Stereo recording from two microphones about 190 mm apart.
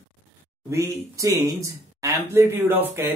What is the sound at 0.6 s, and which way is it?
Speech, 15° right (ahead or behind).